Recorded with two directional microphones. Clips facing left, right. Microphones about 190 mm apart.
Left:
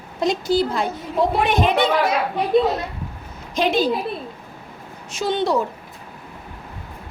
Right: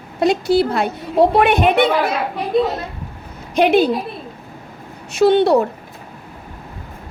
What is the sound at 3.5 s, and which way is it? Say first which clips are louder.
Speech: right 6 dB; 60° right (ahead or behind).